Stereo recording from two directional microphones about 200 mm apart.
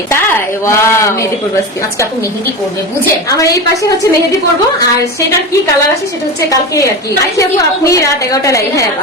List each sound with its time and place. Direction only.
0.1 s speech: 10° left (ahead or behind)
3.2 s speech: 15° left (ahead or behind)
6.5 s speech: 15° left (ahead or behind)